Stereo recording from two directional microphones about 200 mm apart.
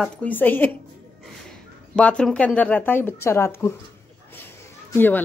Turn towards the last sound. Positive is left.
turn(degrees=10)  # may be behind; listen again after turning